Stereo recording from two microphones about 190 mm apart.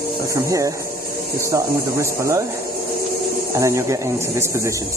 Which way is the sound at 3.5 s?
15° right (ahead or behind).